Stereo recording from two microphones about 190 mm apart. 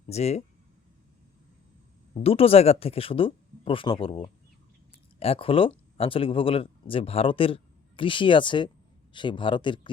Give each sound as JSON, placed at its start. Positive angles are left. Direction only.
{"t": 0.1, "sound": "speech", "side_deg": 35}
{"t": 2.2, "sound": "speech", "side_deg": 30}